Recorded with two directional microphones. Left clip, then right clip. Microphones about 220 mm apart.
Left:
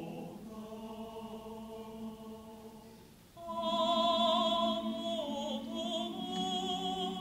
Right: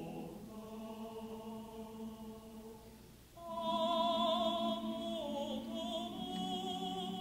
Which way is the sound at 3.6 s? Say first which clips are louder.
Left 4 dB; 30° left (ahead or behind).